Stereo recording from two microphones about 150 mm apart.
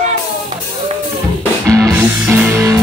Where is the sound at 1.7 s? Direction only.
20° right (ahead or behind).